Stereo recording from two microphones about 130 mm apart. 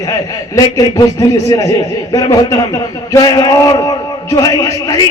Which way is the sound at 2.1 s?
30° left (ahead or behind).